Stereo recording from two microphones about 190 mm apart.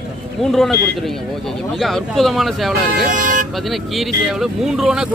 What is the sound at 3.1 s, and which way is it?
Speech, 45° right (ahead or behind).